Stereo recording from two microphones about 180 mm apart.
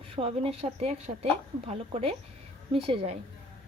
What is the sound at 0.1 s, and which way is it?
A woman's voice, 35° right (ahead or behind).